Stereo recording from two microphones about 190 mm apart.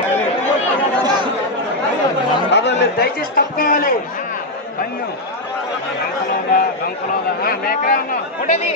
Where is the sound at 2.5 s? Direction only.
65° left (ahead or behind); by 4.0 s 50° left (ahead or behind).